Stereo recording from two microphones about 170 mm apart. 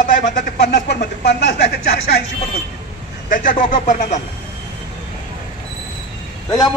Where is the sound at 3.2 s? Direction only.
55° left (ahead or behind).